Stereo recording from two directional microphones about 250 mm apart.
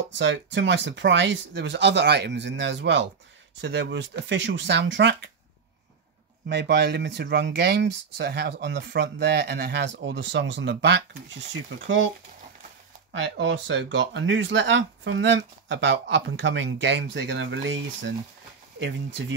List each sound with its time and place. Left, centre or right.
0.2 s speech: right
6.5 s speech: right
13.1 s speech: right